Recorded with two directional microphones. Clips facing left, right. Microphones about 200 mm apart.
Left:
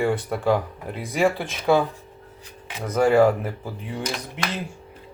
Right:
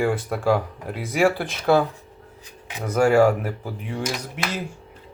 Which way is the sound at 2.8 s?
Centre (ahead or behind).